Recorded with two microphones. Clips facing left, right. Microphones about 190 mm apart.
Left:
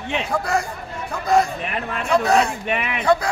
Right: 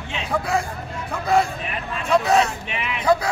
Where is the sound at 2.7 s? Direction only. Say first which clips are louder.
Left 5 dB; 55° left (ahead or behind).